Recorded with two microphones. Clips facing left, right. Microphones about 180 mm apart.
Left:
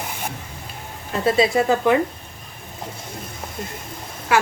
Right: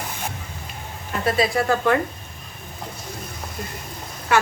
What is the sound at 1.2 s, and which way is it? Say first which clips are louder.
Speech: left 3 dB; 25° left (ahead or behind).